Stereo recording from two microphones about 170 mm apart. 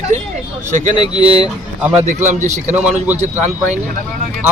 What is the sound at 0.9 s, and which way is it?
Speech, 25° left (ahead or behind).